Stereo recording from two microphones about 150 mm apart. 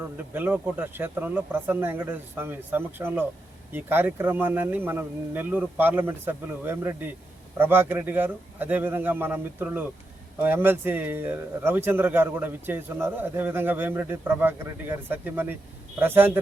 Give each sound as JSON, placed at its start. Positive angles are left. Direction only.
{"t": 0.0, "sound": "a man's voice", "side_deg": -10}